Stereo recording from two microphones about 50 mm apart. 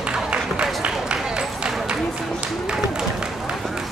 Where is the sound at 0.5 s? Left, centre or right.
Right.